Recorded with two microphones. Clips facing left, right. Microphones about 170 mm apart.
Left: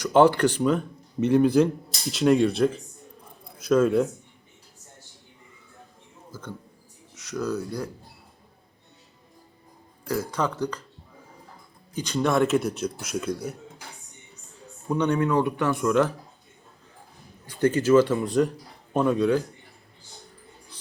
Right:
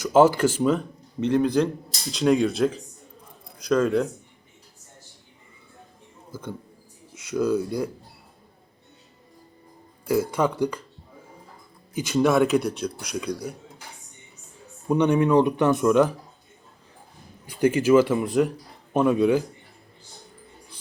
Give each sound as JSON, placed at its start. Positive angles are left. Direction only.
{"t": 0.0, "sound": "speech", "side_deg": -5}
{"t": 7.1, "sound": "speech", "side_deg": -10}
{"t": 10.1, "sound": "speech", "side_deg": -10}
{"t": 11.9, "sound": "speech", "side_deg": -5}
{"t": 14.8, "sound": "speech", "side_deg": -10}
{"t": 17.4, "sound": "speech", "side_deg": -10}